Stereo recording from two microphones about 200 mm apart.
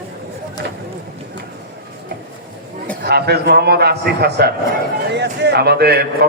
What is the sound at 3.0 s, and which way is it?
A man's voice, 50° right (ahead or behind).